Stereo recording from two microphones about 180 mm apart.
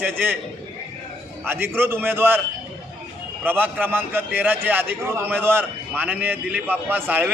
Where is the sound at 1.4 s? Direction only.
10° right (ahead or behind).